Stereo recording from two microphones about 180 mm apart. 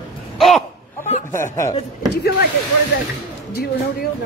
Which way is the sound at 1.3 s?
15° left (ahead or behind).